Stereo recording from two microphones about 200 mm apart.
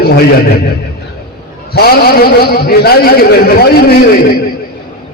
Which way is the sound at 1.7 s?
50° left (ahead or behind).